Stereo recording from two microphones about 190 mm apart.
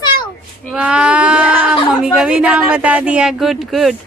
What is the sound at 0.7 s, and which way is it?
Speech, 5° right (ahead or behind).